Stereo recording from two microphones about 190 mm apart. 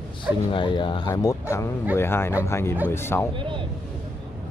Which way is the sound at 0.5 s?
25° left (ahead or behind).